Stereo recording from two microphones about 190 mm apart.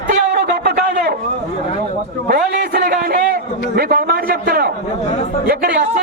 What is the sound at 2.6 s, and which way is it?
Music, 55° right (ahead or behind).